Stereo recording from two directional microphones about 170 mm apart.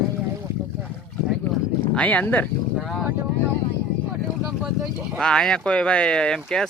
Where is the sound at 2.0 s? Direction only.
10° left (ahead or behind).